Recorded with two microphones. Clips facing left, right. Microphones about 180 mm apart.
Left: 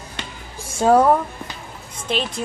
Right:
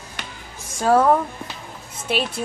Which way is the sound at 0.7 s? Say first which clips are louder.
Left 2 dB; 25° left (ahead or behind).